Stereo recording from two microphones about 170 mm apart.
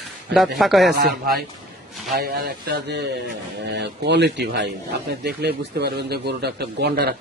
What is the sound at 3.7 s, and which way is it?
Speech, 90° right.